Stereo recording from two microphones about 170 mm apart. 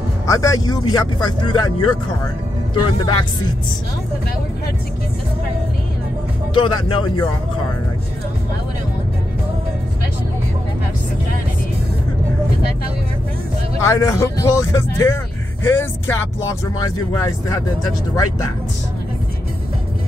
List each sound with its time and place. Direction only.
0.3 s speech: 20° left (ahead or behind)
6.5 s speech: 30° left (ahead or behind)
13.7 s speech: 20° left (ahead or behind)
16.7 s speech: 20° left (ahead or behind)